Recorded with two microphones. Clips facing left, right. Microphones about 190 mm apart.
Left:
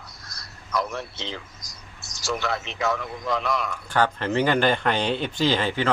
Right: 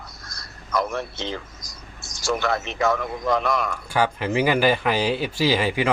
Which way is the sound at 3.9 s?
10° right (ahead or behind).